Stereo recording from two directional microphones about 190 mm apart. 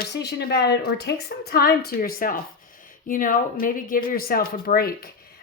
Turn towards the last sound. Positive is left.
turn(degrees=50)  # may be behind; listen again after turning